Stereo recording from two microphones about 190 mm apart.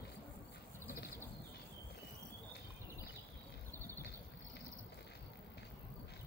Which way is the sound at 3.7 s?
15° right (ahead or behind).